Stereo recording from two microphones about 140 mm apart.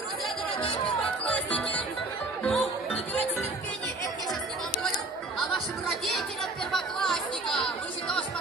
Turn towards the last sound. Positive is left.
turn(degrees=5)  # may be behind; listen again after turning